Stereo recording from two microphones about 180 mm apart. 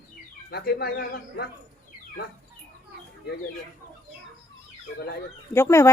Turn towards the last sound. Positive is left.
turn(degrees=15)  # may be behind; listen again after turning